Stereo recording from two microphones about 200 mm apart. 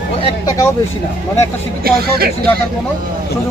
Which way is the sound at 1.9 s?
50° right (ahead or behind).